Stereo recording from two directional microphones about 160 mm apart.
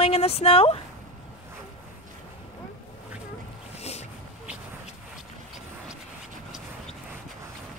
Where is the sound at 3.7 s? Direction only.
40° left (ahead or behind).